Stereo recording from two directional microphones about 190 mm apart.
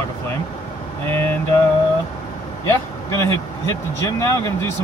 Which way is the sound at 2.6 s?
15° left (ahead or behind).